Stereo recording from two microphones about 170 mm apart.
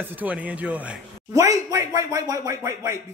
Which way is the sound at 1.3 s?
20° right (ahead or behind).